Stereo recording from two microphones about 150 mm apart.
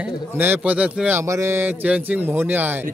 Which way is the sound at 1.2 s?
20° right (ahead or behind).